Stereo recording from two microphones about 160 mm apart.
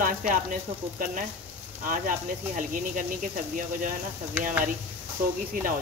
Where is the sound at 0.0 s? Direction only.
55° right (ahead or behind).